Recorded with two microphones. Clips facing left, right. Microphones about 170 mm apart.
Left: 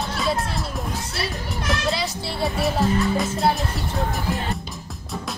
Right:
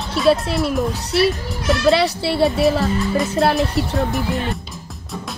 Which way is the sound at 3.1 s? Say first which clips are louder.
Right 5 dB; centre (ahead or behind).